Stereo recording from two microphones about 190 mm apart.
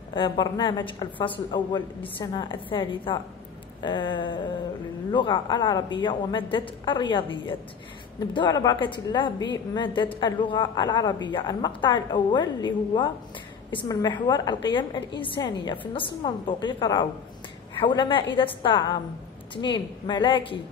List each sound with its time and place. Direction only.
0.1 s a woman's voice: 25° left (ahead or behind)